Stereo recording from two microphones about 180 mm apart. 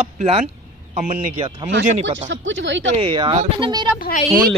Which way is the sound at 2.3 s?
90° right.